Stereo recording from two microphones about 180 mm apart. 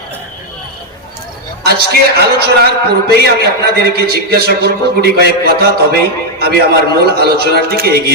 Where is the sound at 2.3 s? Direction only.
60° right (ahead or behind).